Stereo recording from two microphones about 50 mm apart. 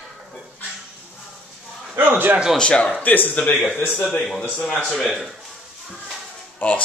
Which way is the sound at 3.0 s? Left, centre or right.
Left.